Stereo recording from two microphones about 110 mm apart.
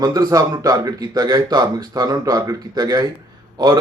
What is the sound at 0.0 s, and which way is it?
Speech, 40° right (ahead or behind).